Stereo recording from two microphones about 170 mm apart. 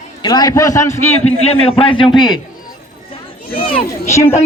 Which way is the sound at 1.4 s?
35° left (ahead or behind).